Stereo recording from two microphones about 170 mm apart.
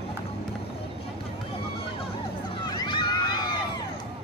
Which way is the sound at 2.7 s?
25° left (ahead or behind).